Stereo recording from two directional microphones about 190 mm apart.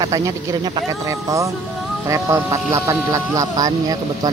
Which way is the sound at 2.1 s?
15° right (ahead or behind).